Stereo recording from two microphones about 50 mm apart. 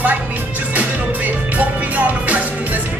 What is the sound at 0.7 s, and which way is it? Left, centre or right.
Music, right.